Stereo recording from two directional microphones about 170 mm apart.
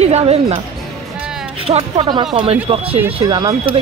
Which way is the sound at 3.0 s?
25° right (ahead or behind).